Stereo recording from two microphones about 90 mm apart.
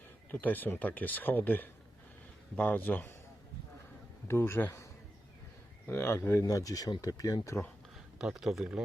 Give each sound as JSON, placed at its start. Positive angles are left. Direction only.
{"t": 0.4, "sound": "speech", "side_deg": 20}
{"t": 4.3, "sound": "speech", "side_deg": 25}
{"t": 8.2, "sound": "a man's voice", "side_deg": -5}